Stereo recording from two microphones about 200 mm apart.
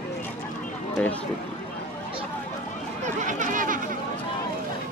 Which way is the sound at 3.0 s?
40° right (ahead or behind).